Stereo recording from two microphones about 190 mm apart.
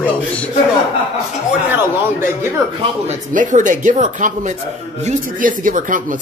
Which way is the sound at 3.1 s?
45° right (ahead or behind).